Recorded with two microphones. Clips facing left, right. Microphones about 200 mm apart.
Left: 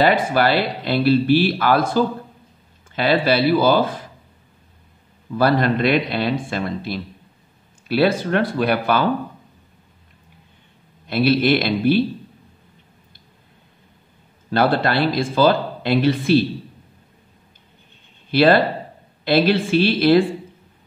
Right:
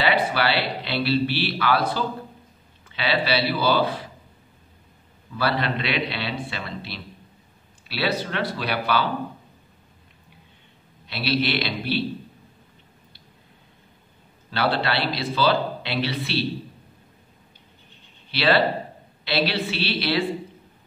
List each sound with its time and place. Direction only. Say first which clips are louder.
0.0 s speech: left 6 dB; 45° left (ahead or behind)
5.4 s speech: left 8 dB; 45° left (ahead or behind)
11.1 s speech: left 8 dB; 50° left (ahead or behind)
14.5 s speech: left 6 dB; 45° left (ahead or behind)
18.3 s speech: left 6 dB; 50° left (ahead or behind)